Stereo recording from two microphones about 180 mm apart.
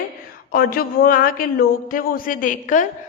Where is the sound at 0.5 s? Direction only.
55° left (ahead or behind).